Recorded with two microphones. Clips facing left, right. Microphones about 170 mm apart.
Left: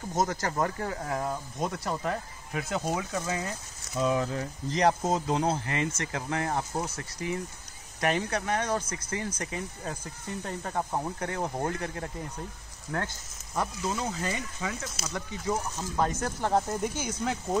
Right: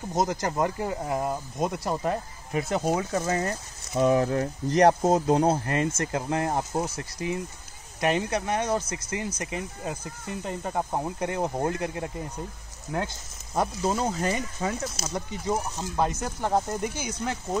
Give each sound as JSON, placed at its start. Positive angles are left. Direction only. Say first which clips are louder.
{"t": 0.1, "sound": "speech", "louder": "right 2 dB", "side_deg": -10}
{"t": 2.9, "sound": "speech", "louder": "right 5 dB", "side_deg": -40}
{"t": 3.3, "sound": "speech", "louder": "right 6 dB", "side_deg": -60}
{"t": 5.0, "sound": "speech", "louder": "right 6 dB", "side_deg": -45}
{"t": 6.5, "sound": "speech", "louder": "right 3 dB", "side_deg": -25}
{"t": 8.0, "sound": "speech", "louder": "right 3 dB", "side_deg": -15}
{"t": 13.6, "sound": "speech", "louder": "right 5 dB", "side_deg": -40}
{"t": 15.1, "sound": "speech", "louder": "right 2 dB", "side_deg": -20}